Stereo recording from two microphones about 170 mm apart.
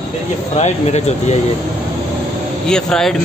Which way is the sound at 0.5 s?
40° left (ahead or behind).